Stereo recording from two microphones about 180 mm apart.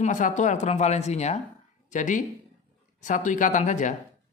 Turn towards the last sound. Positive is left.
turn(degrees=45)  # may be behind; listen again after turning